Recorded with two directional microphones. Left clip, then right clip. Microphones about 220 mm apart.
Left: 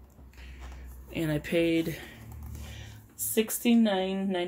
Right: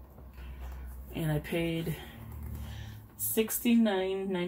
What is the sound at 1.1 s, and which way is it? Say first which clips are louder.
Speech: left 6 dB; 45° left (ahead or behind).